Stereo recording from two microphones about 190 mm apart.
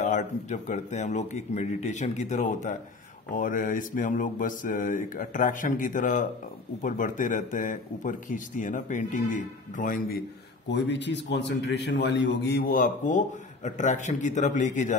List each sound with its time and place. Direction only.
0.0 s a man's voice: 40° left (ahead or behind)
10.7 s a man's voice: 70° left (ahead or behind); by 15.0 s 40° left (ahead or behind)